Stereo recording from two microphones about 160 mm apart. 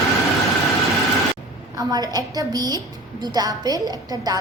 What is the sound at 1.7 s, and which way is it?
A woman's voice, 25° right (ahead or behind).